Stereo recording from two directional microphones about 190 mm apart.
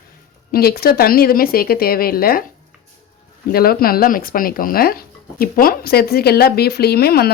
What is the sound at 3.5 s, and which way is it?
Speech, 50° left (ahead or behind).